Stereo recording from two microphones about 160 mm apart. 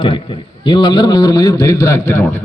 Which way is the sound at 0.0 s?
30° left (ahead or behind).